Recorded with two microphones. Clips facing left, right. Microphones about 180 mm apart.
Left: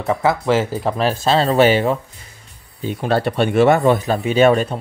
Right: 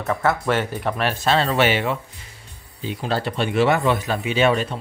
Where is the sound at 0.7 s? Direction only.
35° left (ahead or behind).